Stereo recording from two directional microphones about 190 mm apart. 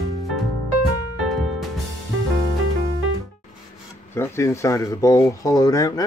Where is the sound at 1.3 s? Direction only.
Centre (ahead or behind).